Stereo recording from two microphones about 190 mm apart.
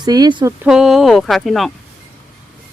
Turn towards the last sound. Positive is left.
turn(degrees=0)  # may be behind; listen again after turning